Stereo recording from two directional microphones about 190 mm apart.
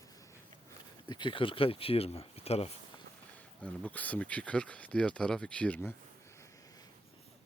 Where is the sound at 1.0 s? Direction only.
25° left (ahead or behind).